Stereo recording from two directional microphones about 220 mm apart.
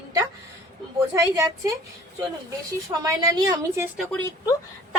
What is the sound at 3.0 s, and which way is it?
Speech, 15° right (ahead or behind).